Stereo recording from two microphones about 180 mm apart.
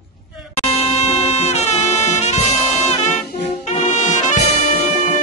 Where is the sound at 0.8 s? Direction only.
35° left (ahead or behind).